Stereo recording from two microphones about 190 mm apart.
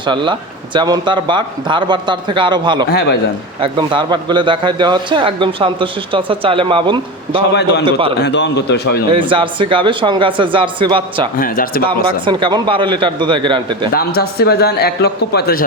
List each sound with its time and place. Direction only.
0.0 s a man's voice: 25° right (ahead or behind)
2.9 s speech: 60° left (ahead or behind)
3.6 s a man's voice: 25° right (ahead or behind)
7.5 s speech: 60° left (ahead or behind)
7.9 s a man's voice: 30° right (ahead or behind)
8.2 s speech: 65° left (ahead or behind)
9.1 s a man's voice: 25° right (ahead or behind)
11.3 s speech: 50° left (ahead or behind)
11.8 s a man's voice: 25° right (ahead or behind)
13.9 s speech: 55° left (ahead or behind)